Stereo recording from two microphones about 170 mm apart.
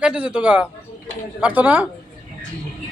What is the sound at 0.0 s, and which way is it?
Speech, 5° right (ahead or behind).